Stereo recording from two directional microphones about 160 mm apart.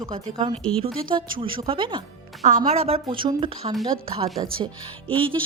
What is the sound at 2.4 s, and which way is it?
A woman's voice, 50° right (ahead or behind).